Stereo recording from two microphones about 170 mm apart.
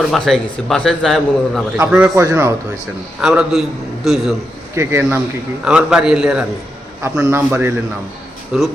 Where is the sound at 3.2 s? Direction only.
5° right (ahead or behind).